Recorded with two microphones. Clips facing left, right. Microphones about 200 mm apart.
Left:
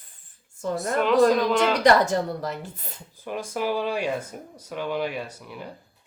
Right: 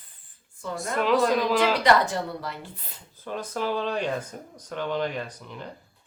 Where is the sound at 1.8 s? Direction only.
45° left (ahead or behind).